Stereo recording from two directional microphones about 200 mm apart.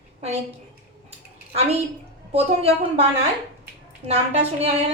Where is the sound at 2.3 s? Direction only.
30° right (ahead or behind).